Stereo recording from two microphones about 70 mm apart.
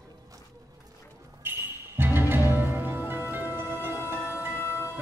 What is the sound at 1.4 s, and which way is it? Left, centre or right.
Music, right.